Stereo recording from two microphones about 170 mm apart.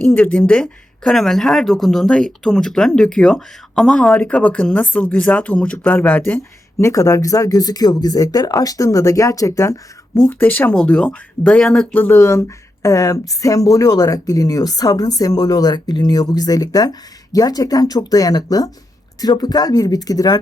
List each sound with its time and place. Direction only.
0.0 s speech: 10° left (ahead or behind)